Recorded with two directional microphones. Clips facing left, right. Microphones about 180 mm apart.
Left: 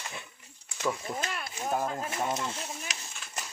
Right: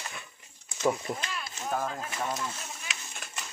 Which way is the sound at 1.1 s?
45° left (ahead or behind).